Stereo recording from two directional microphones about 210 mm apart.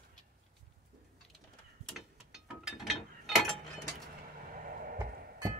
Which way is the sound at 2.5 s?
Centre (ahead or behind).